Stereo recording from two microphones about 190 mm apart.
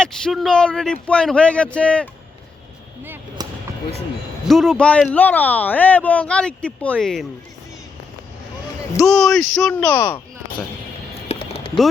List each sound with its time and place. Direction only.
0.0 s speech: centre (ahead or behind)
3.0 s a sound: 10° right (ahead or behind)
4.4 s speech: centre (ahead or behind)
9.0 s speech: centre (ahead or behind)
11.3 s music: 30° left (ahead or behind)